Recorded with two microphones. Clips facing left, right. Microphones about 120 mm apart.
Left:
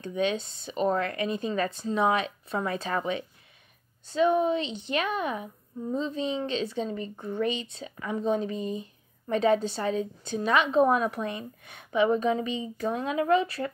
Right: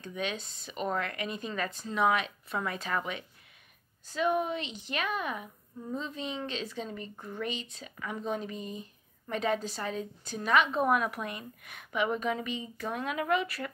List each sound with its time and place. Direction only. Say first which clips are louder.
0.1 s a woman's voice: left 8 dB; 30° left (ahead or behind)